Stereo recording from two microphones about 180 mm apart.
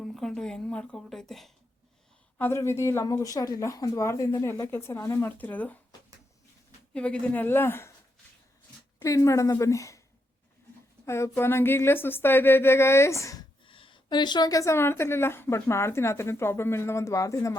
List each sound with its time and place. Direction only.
0.0 s a woman's voice: 5° left (ahead or behind)
2.4 s a woman's voice: 15° left (ahead or behind)
6.9 s a woman's voice: 5° left (ahead or behind)
9.0 s a woman's voice: 15° left (ahead or behind)
11.0 s a woman's voice: 15° left (ahead or behind)
13.7 s a woman's voice: 30° left (ahead or behind)